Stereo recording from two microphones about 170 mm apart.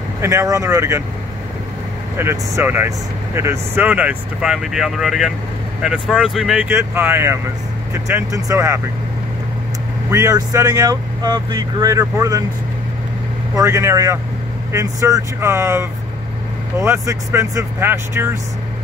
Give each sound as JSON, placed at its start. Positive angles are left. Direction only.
{"t": 0.2, "sound": "speech", "side_deg": -15}
{"t": 2.1, "sound": "speech", "side_deg": -15}
{"t": 10.1, "sound": "speech", "side_deg": -20}
{"t": 13.6, "sound": "speech", "side_deg": -15}